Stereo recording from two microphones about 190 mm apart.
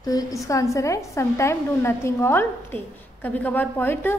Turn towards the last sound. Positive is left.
turn(degrees=10)  # may be behind; listen again after turning